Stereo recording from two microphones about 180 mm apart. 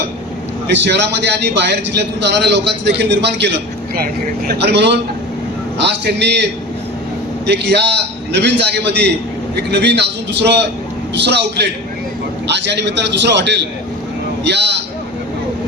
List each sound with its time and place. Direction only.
0.7 s a man's voice: 75° right (ahead or behind)
3.9 s a man's voice: 55° right (ahead or behind); by 14.8 s 70° right (ahead or behind)